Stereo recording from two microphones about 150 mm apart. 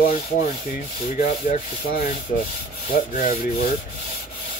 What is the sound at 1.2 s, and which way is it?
Speech, 65° left (ahead or behind).